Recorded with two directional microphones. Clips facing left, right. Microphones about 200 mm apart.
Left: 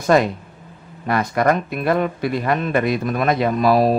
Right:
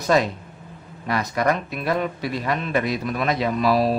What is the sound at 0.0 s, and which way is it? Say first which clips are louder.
Speech: left 4 dB; 55° left (ahead or behind).